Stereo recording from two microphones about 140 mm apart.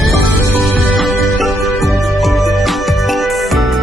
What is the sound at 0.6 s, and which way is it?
Music, centre (ahead or behind).